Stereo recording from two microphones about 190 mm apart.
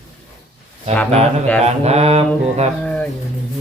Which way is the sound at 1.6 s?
35° right (ahead or behind).